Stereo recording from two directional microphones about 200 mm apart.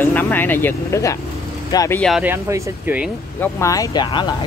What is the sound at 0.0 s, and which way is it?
Speech, 10° left (ahead or behind).